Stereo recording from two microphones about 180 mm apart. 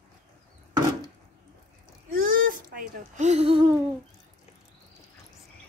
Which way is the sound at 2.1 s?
50° right (ahead or behind).